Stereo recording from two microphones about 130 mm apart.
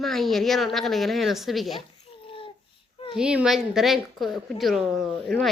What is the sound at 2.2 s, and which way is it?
Babbling, 45° left (ahead or behind).